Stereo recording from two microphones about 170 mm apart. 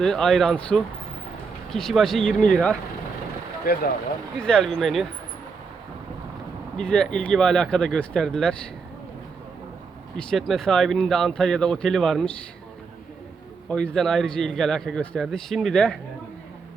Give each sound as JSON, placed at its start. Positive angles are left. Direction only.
{"t": 0.0, "sound": "a man's voice", "side_deg": 5}
{"t": 3.7, "sound": "speech", "side_deg": 65}
{"t": 4.4, "sound": "a man's voice", "side_deg": 5}
{"t": 6.7, "sound": "a man's voice", "side_deg": 5}
{"t": 10.2, "sound": "a man's voice", "side_deg": 5}
{"t": 13.7, "sound": "a man's voice", "side_deg": 5}